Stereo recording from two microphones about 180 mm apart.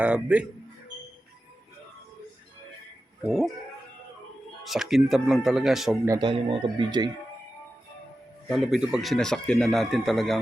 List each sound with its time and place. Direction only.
0.0 s speech: 5° right (ahead or behind)
3.2 s speech: centre (ahead or behind)
4.6 s speech: centre (ahead or behind)
6.1 s speech: 25° right (ahead or behind)
8.4 s speech: centre (ahead or behind)